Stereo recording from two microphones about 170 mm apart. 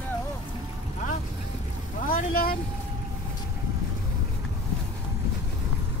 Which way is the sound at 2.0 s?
60° left (ahead or behind).